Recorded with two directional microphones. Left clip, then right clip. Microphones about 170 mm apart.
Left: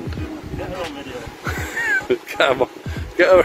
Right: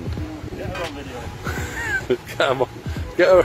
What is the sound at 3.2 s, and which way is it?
Speech, 25° right (ahead or behind).